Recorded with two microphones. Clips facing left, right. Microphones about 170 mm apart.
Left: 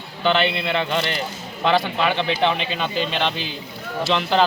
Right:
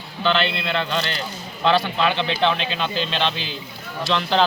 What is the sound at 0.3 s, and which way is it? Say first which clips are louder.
A man's voice: left 2 dB; 15° left (ahead or behind).